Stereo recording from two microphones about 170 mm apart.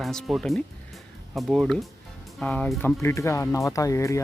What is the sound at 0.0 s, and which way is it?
Speech, centre (ahead or behind).